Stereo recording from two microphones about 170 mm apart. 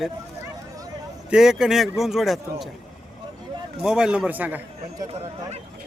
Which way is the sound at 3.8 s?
5° right (ahead or behind).